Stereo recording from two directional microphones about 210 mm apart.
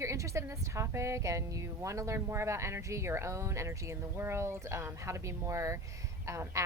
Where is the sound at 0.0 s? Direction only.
15° right (ahead or behind).